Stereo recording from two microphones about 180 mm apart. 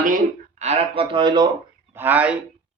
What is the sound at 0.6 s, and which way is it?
Speech, 35° right (ahead or behind).